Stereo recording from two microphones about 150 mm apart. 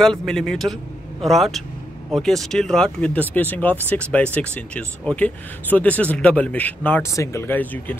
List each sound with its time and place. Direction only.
0.0 s speech: 5° left (ahead or behind)